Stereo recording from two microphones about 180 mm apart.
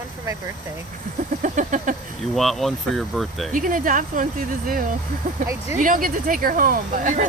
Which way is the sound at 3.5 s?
50° right (ahead or behind).